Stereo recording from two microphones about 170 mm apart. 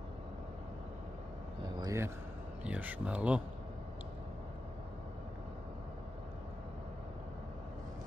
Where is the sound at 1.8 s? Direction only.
15° right (ahead or behind).